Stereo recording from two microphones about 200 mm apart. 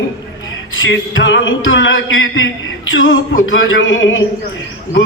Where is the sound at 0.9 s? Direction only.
70° left (ahead or behind).